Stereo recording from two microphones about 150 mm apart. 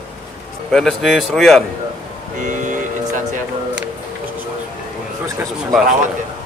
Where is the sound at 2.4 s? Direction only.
55° right (ahead or behind).